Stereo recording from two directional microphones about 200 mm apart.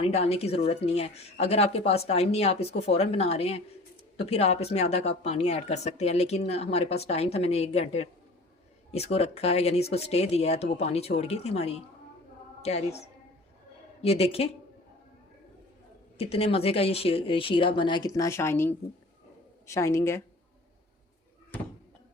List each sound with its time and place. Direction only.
0.0 s speech: 30° left (ahead or behind)
14.0 s speech: 30° left (ahead or behind)
16.1 s a woman's voice: 30° left (ahead or behind); by 20.2 s 15° left (ahead or behind)